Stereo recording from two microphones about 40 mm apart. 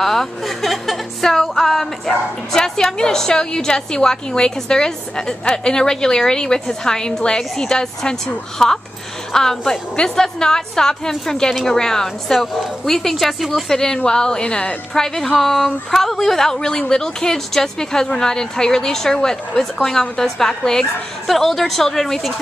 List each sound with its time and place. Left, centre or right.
0.0 s a woman's voice: centre
13.7 s a woman's voice: centre
15.3 s a woman's voice: centre